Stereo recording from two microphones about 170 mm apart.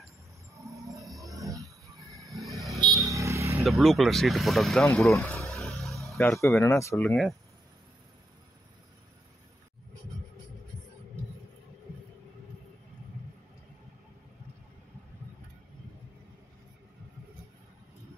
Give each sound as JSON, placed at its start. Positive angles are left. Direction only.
{"t": 0.7, "sound": "music", "side_deg": 0}
{"t": 2.7, "sound": "vehicle", "side_deg": -20}
{"t": 3.6, "sound": "speech", "side_deg": 0}
{"t": 5.5, "sound": "a sound", "side_deg": 0}
{"t": 6.4, "sound": "speech", "side_deg": 15}